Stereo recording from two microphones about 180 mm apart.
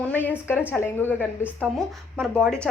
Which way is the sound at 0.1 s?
10° left (ahead or behind).